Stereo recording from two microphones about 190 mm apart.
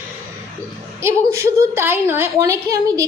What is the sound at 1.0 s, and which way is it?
A woman's voice, 15° right (ahead or behind).